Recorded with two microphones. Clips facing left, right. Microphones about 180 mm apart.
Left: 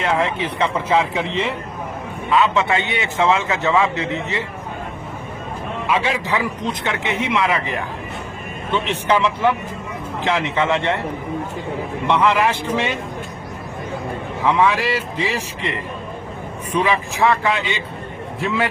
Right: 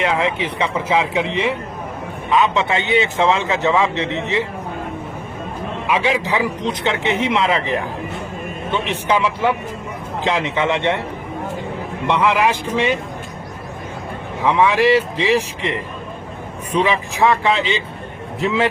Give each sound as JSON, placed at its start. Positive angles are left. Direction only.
{"t": 0.0, "sound": "a man's voice", "side_deg": -15}
{"t": 5.9, "sound": "speech", "side_deg": -15}
{"t": 7.1, "sound": "a man's voice", "side_deg": -25}
{"t": 12.0, "sound": "speech", "side_deg": -15}
{"t": 14.4, "sound": "a man's voice", "side_deg": -15}